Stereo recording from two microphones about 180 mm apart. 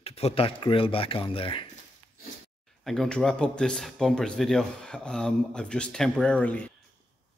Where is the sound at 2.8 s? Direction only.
Centre (ahead or behind).